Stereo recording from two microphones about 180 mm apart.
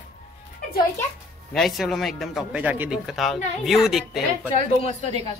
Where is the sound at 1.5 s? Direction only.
Centre (ahead or behind).